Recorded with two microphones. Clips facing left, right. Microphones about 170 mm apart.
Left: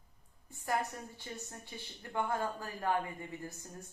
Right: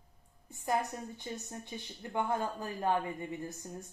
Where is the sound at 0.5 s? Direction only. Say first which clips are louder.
Right 2 dB; 20° right (ahead or behind).